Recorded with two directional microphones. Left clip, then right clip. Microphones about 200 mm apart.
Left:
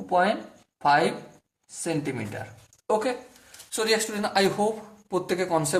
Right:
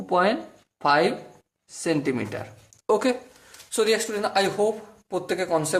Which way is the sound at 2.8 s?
45° right (ahead or behind).